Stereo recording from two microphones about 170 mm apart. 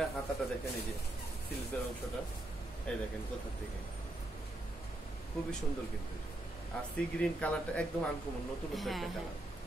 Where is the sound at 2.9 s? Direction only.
5° left (ahead or behind).